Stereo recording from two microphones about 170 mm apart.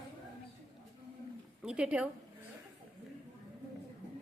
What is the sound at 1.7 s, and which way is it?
Speech, 5° right (ahead or behind).